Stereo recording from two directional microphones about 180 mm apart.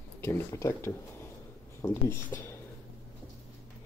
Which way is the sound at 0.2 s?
15° left (ahead or behind).